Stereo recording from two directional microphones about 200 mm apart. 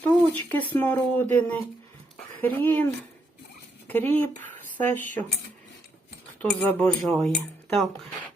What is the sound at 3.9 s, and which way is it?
Speech, 10° left (ahead or behind).